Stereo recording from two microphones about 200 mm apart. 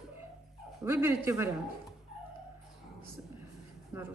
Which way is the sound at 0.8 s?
10° right (ahead or behind).